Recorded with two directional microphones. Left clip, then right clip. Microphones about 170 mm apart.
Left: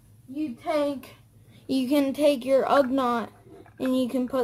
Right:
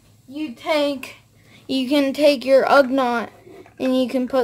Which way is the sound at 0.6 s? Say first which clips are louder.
Right 6 dB; 25° right (ahead or behind).